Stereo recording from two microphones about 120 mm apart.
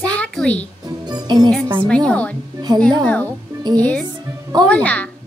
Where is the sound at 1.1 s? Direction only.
35° right (ahead or behind).